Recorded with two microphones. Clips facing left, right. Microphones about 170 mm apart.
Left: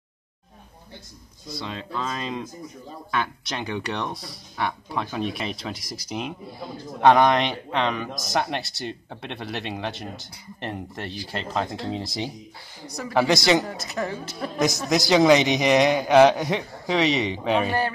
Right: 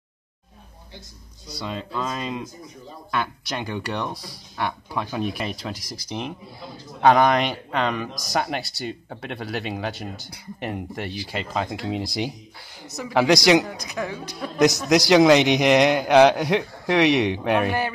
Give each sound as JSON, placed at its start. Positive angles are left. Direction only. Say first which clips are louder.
{"t": 1.7, "sound": "speech", "louder": "right 3 dB", "side_deg": -5}
{"t": 12.9, "sound": "speech", "louder": "right 2 dB", "side_deg": -15}
{"t": 13.6, "sound": "speech", "louder": "right 2 dB", "side_deg": 0}
{"t": 17.1, "sound": "speech", "louder": "right 4 dB", "side_deg": -65}
{"t": 17.4, "sound": "speech", "louder": "right 1 dB", "side_deg": -5}